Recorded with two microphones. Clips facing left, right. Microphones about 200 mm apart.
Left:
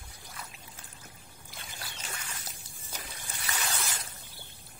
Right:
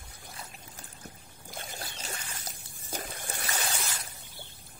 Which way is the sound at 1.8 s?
35° right (ahead or behind).